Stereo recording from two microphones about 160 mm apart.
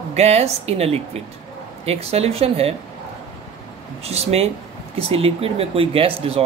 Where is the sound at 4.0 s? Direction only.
40° right (ahead or behind).